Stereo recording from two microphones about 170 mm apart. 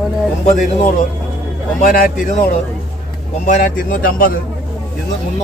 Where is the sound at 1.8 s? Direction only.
55° left (ahead or behind).